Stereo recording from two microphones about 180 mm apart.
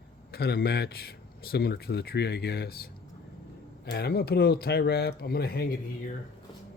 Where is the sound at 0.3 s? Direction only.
60° left (ahead or behind).